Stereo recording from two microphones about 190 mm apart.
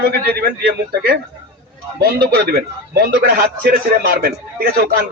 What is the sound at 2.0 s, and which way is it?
A man's voice, 50° right (ahead or behind).